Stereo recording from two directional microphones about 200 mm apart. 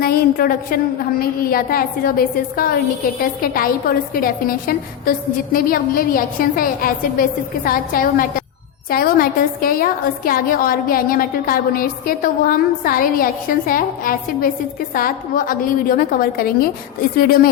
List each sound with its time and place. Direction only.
0.0 s a woman's voice: 50° left (ahead or behind)